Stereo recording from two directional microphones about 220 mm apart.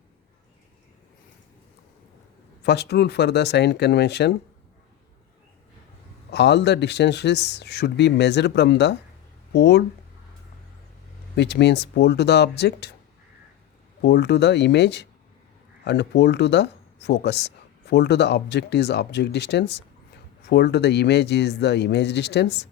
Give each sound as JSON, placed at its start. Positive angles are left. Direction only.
{"t": 2.6, "sound": "speech", "side_deg": 50}
{"t": 6.3, "sound": "speech", "side_deg": 50}
{"t": 11.3, "sound": "speech", "side_deg": 50}
{"t": 14.0, "sound": "speech", "side_deg": 50}